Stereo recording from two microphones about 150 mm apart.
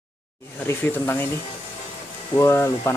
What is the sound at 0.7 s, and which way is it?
Speech, 15° left (ahead or behind).